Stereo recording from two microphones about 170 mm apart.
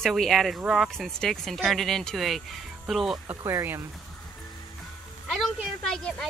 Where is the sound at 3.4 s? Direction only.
15° right (ahead or behind).